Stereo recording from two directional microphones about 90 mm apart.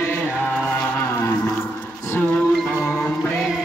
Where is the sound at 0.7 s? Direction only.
25° left (ahead or behind).